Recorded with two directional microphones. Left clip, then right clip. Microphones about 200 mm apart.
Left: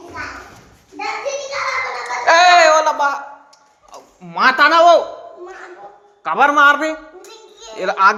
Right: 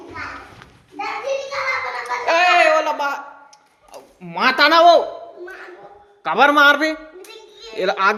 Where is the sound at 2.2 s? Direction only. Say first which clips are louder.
Left 5 dB; 15° right (ahead or behind).